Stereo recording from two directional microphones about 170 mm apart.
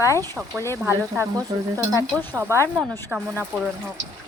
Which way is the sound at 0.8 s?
15° right (ahead or behind).